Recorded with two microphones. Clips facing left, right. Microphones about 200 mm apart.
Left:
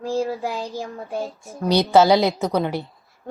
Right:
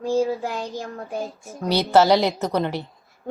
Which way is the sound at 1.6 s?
15° left (ahead or behind).